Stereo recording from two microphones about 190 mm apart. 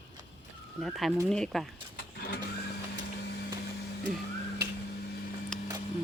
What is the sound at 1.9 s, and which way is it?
Vehicle, 55° left (ahead or behind).